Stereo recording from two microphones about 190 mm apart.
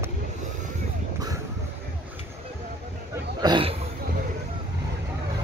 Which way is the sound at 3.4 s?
25° right (ahead or behind).